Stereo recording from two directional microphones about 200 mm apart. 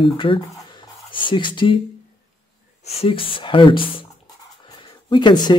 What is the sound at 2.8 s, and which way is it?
Speech, 30° left (ahead or behind).